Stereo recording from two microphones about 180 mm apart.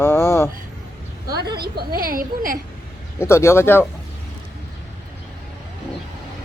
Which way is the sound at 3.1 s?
15° left (ahead or behind).